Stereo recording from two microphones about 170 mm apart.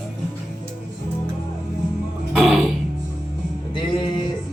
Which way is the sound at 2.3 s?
Centre (ahead or behind).